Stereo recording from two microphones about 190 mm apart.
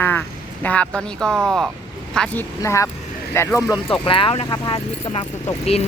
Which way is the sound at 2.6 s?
15° left (ahead or behind).